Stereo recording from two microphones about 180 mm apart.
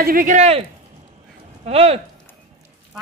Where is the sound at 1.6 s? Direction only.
35° right (ahead or behind).